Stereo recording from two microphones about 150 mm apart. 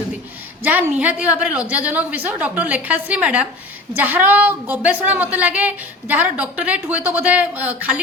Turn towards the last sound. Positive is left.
turn(degrees=-10)  # may be behind; listen again after turning